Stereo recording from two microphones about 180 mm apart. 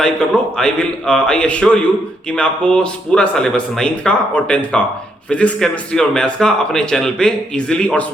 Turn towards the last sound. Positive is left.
turn(degrees=5)  # may be behind; listen again after turning